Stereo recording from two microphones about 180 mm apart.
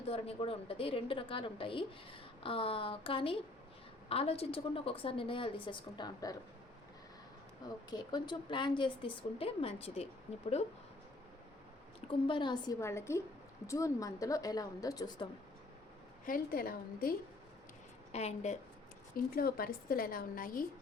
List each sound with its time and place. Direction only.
0.1 s a woman's voice: 35° left (ahead or behind)
7.9 s a woman's voice: 25° left (ahead or behind)
11.9 s a woman's voice: 30° left (ahead or behind)
16.2 s a woman's voice: 50° left (ahead or behind)
18.1 s a woman's voice: 35° left (ahead or behind)
19.1 s a woman's voice: 55° left (ahead or behind)